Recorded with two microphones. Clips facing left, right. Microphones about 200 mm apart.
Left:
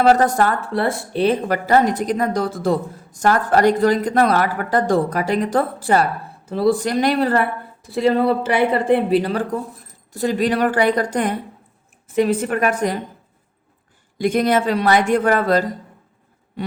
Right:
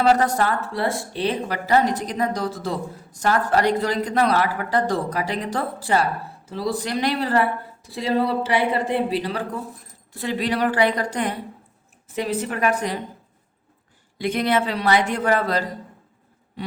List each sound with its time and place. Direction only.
0.0 s speech: 50° left (ahead or behind)
14.2 s speech: 45° left (ahead or behind)